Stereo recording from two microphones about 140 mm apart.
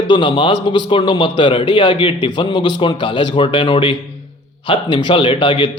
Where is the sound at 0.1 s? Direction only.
35° left (ahead or behind).